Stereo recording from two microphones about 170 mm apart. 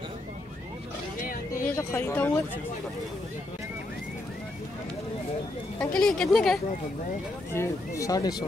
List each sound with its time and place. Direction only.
1.2 s a sound: 55° left (ahead or behind)
1.7 s speech: 15° left (ahead or behind)
5.9 s a woman's voice: 5° left (ahead or behind)
7.5 s speech: 15° left (ahead or behind)